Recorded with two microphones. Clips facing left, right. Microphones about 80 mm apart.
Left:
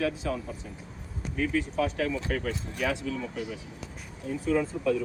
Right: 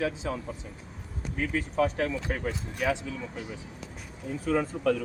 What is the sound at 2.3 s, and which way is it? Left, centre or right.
Speech, right.